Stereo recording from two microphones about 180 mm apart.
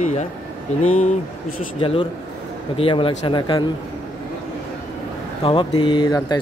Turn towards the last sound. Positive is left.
turn(degrees=20)  # may be behind; listen again after turning